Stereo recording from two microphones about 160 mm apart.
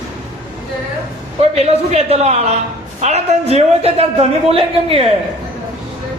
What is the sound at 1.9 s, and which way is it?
Speech, 40° right (ahead or behind).